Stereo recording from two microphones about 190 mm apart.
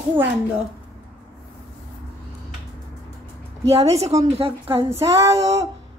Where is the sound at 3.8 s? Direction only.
35° right (ahead or behind).